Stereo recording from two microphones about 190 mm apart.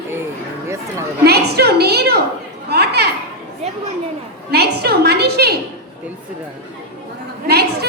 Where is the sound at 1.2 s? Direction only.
60° right (ahead or behind).